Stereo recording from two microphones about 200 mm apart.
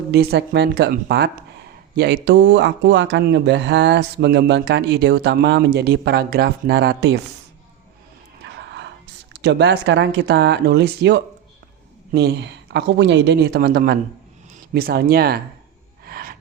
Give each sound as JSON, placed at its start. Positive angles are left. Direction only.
{"t": 0.1, "sound": "speech", "side_deg": -55}
{"t": 8.4, "sound": "a sound", "side_deg": -60}
{"t": 9.3, "sound": "speech", "side_deg": -60}
{"t": 16.0, "sound": "gasp", "side_deg": -50}